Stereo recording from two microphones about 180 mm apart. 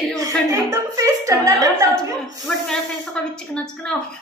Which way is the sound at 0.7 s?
20° right (ahead or behind).